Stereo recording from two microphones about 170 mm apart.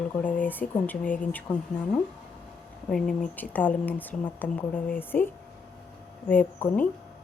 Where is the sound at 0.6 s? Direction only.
50° left (ahead or behind).